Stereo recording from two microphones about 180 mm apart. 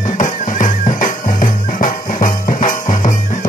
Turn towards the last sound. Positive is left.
turn(degrees=45)  # may be behind; listen again after turning